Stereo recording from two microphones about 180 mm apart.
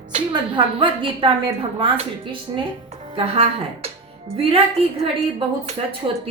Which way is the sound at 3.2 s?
35° right (ahead or behind).